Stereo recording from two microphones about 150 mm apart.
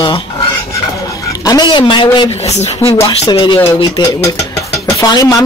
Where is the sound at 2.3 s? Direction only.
45° left (ahead or behind).